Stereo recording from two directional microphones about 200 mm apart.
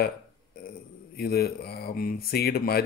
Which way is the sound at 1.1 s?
50° left (ahead or behind).